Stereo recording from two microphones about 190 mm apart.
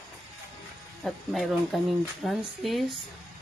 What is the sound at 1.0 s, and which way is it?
Speech, centre (ahead or behind).